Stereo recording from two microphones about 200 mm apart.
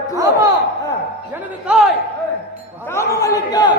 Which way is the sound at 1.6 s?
Centre (ahead or behind).